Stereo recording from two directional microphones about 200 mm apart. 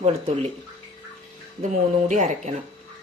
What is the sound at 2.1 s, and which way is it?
Speech, 35° right (ahead or behind).